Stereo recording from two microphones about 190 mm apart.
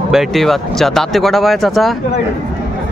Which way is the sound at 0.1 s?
Centre (ahead or behind).